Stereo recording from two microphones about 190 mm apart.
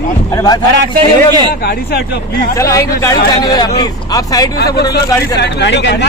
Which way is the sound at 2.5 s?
15° left (ahead or behind).